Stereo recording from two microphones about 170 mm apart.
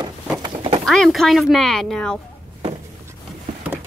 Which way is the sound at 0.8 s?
Centre (ahead or behind).